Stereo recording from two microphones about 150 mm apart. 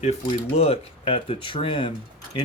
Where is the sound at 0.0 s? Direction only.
45° left (ahead or behind).